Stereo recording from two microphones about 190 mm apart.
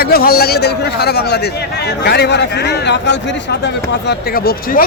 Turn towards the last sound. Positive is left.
turn(degrees=50)  # may be behind; listen again after turning